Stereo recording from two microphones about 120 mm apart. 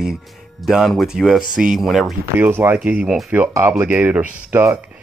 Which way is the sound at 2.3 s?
15° right (ahead or behind).